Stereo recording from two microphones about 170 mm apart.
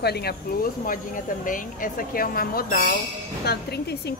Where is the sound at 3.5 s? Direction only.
75° left (ahead or behind).